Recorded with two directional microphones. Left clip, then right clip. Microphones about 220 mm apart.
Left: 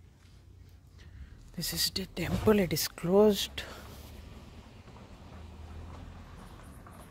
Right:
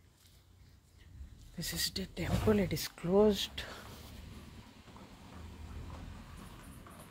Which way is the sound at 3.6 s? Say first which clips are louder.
Left 1 dB; 15° left (ahead or behind).